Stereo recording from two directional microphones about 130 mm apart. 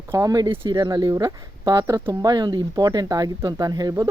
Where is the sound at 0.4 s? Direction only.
40° right (ahead or behind).